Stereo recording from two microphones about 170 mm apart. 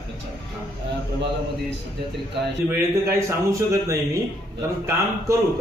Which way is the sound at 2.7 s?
15° right (ahead or behind).